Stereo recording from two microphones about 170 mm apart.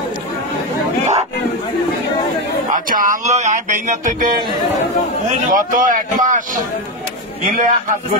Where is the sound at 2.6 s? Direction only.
50° right (ahead or behind).